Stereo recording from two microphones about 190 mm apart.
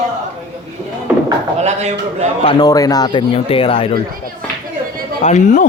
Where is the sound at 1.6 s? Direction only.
35° right (ahead or behind).